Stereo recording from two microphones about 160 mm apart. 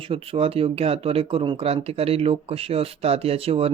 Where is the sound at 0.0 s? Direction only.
35° right (ahead or behind).